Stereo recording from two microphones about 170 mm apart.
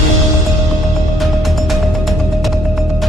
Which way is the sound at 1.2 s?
Centre (ahead or behind).